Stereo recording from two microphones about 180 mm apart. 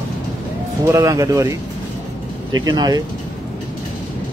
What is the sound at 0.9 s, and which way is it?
Speech, 15° right (ahead or behind).